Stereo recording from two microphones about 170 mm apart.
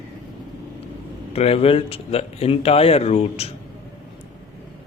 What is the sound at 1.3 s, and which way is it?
Speech, 35° left (ahead or behind).